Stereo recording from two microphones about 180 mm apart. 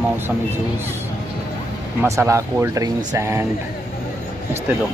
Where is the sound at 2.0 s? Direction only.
15° right (ahead or behind).